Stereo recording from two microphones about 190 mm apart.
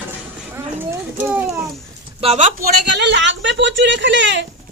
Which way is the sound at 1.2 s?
10° right (ahead or behind).